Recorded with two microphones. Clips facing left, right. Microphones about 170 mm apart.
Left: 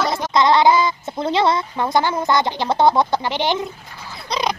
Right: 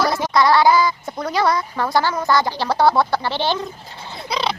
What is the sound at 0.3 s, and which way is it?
Speech, 20° left (ahead or behind).